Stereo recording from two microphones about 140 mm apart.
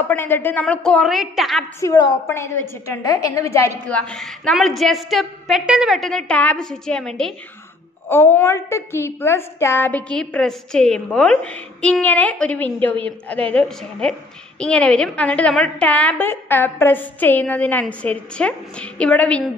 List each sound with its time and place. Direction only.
0.1 s a woman's voice: 15° left (ahead or behind); by 1.7 s centre (ahead or behind)
1.8 s a woman's voice: 20° left (ahead or behind)
3.8 s a woman's voice: 10° left (ahead or behind)
8.1 s a woman's voice: 15° left (ahead or behind)